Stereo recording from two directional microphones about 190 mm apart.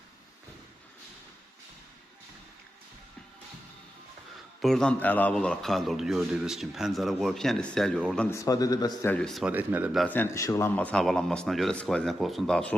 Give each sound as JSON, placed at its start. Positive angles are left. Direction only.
{"t": 4.6, "sound": "a man's voice", "side_deg": 5}
{"t": 8.4, "sound": "a man's voice", "side_deg": 20}
{"t": 9.1, "sound": "a man's voice", "side_deg": 0}
{"t": 10.1, "sound": "a man's voice", "side_deg": 10}